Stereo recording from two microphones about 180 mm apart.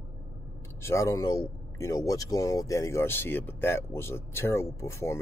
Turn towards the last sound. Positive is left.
turn(degrees=15)  # may be behind; listen again after turning